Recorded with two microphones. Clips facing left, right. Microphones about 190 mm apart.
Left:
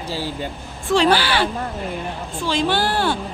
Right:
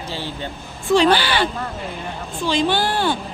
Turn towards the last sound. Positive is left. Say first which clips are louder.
# even
turn(degrees=5)  # may be behind; listen again after turning